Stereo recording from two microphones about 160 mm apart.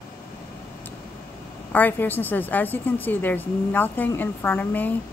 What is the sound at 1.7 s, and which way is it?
A woman's voice, 10° left (ahead or behind).